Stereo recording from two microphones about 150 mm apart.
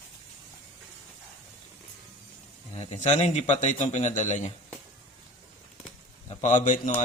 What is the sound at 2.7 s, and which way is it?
Speech, 50° left (ahead or behind).